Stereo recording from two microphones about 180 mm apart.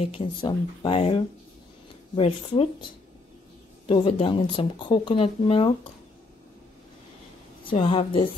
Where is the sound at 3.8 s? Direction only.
30° left (ahead or behind).